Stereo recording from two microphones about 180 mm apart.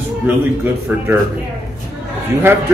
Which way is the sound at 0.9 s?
10° right (ahead or behind).